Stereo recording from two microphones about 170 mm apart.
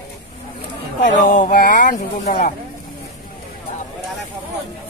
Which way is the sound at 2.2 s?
45° left (ahead or behind).